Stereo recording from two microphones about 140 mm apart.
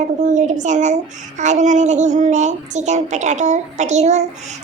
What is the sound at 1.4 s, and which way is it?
A child's voice, 60° right (ahead or behind).